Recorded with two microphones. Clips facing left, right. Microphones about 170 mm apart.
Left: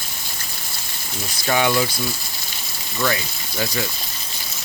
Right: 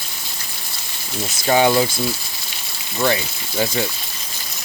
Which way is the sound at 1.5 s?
30° right (ahead or behind).